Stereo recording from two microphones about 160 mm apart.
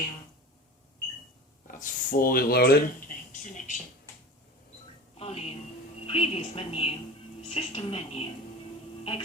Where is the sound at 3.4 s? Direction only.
50° left (ahead or behind).